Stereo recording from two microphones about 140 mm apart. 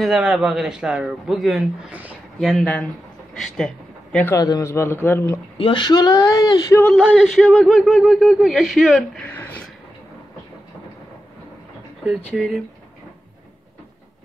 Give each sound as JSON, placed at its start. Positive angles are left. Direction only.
{"t": 0.0, "sound": "a man's voice", "side_deg": -5}
{"t": 4.3, "sound": "a man's voice", "side_deg": 25}
{"t": 5.6, "sound": "speech", "side_deg": 35}
{"t": 7.0, "sound": "a man's voice", "side_deg": -5}
{"t": 9.1, "sound": "a sound", "side_deg": 10}
{"t": 12.4, "sound": "a man's voice", "side_deg": 0}